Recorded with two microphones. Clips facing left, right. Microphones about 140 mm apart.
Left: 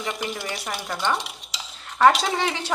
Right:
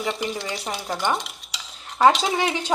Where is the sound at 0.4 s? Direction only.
20° right (ahead or behind).